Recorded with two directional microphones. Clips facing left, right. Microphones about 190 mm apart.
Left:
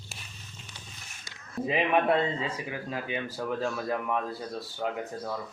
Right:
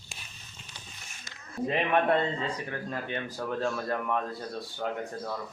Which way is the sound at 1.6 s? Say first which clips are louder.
Left 1 dB; 5° left (ahead or behind).